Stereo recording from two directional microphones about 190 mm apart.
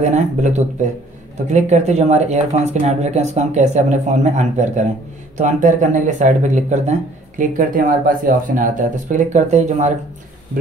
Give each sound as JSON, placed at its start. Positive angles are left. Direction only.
{"t": 0.1, "sound": "speech", "side_deg": -40}